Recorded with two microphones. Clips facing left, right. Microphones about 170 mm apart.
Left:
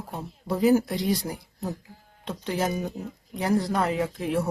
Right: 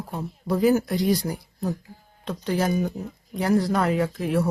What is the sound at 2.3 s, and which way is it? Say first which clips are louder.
Speech: right 3 dB; 25° left (ahead or behind).